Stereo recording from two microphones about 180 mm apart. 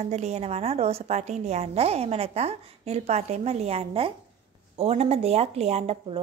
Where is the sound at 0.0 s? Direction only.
40° right (ahead or behind).